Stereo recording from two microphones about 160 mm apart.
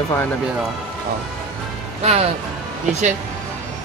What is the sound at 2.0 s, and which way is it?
Speech, 40° right (ahead or behind).